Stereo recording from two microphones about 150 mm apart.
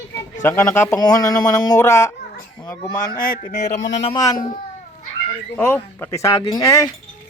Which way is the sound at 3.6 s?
45° left (ahead or behind).